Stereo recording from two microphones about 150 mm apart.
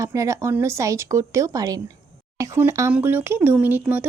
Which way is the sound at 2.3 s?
20° right (ahead or behind).